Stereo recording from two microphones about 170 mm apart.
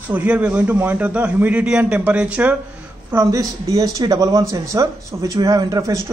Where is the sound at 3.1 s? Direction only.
20° right (ahead or behind).